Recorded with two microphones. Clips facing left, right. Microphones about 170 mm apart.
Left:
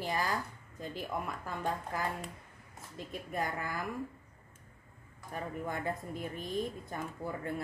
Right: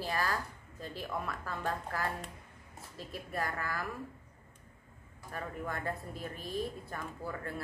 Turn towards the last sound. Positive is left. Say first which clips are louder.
# left 2 dB
turn(degrees=20)  # may be behind; listen again after turning